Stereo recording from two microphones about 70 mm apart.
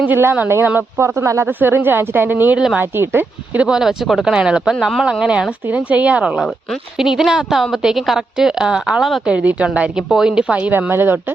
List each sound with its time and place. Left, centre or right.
0.0 s speech: right
1.5 s speech: right
3.7 s speech: centre
4.7 s a woman's voice: centre
5.6 s a woman's voice: right; by 9.2 s centre
9.2 s speech: centre
10.1 s speech: centre; by 11.2 s right